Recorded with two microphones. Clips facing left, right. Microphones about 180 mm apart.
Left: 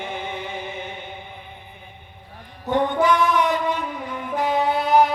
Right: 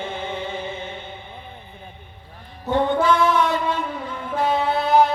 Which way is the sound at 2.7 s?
15° left (ahead or behind).